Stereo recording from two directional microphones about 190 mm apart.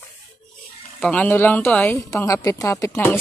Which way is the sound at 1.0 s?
5° left (ahead or behind).